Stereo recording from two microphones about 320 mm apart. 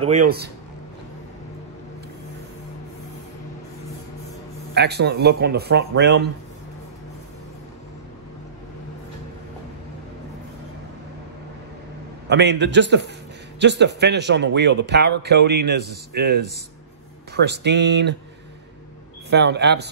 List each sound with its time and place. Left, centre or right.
0.0 s speech: right
4.7 s a man's voice: right
12.3 s a man's voice: right
19.3 s a man's voice: right